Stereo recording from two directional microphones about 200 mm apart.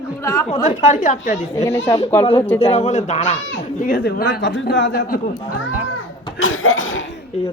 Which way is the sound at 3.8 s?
50° left (ahead or behind).